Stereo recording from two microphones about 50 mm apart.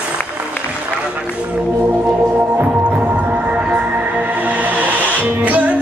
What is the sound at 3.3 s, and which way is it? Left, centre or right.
Music, right.